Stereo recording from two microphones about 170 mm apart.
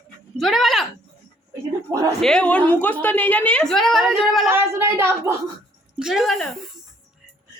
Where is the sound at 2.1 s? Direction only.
5° left (ahead or behind).